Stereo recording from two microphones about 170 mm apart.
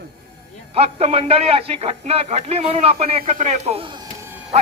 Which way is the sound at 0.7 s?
35° right (ahead or behind).